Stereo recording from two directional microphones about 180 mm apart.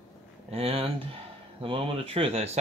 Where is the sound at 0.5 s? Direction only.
30° right (ahead or behind).